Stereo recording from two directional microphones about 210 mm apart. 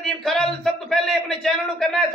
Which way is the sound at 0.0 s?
Centre (ahead or behind).